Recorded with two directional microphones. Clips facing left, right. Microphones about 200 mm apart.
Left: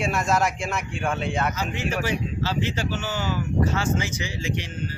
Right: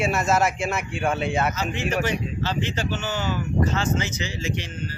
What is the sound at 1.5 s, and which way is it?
Speech, 10° left (ahead or behind).